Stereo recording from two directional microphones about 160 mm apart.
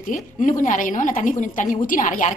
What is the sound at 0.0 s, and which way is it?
A woman's voice, 55° left (ahead or behind).